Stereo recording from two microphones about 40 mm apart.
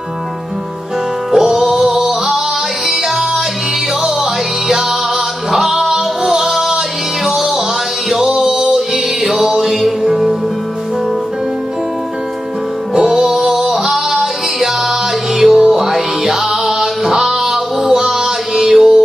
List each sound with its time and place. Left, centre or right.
1.3 s music: centre
12.9 s music: centre